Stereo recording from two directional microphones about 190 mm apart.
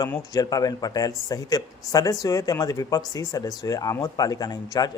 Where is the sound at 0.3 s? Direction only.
20° left (ahead or behind).